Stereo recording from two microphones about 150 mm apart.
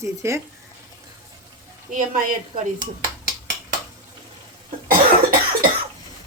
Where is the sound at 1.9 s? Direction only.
60° right (ahead or behind).